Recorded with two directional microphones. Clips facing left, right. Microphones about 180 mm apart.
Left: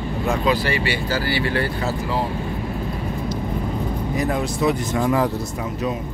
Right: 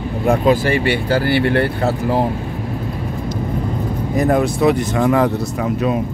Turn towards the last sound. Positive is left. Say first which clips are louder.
# right 5 dB
turn(degrees=-70)  # may be behind; listen again after turning